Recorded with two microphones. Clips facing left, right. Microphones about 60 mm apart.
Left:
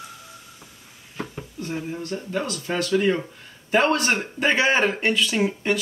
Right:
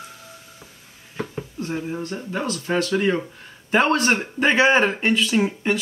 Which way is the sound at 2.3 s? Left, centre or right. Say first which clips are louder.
Right 3 dB; centre.